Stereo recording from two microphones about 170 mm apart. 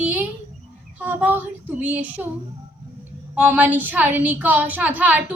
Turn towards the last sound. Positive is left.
turn(degrees=-10)  # may be behind; listen again after turning